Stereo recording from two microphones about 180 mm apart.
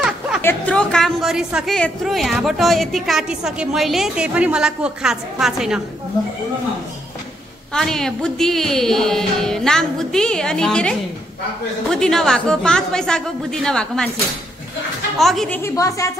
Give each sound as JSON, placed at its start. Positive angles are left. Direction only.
{"t": 0.4, "sound": "a woman's voice", "side_deg": 10}
{"t": 7.7, "sound": "a woman's voice", "side_deg": 5}
{"t": 15.1, "sound": "a woman's voice", "side_deg": 0}
{"t": 15.6, "sound": "a woman's voice", "side_deg": 15}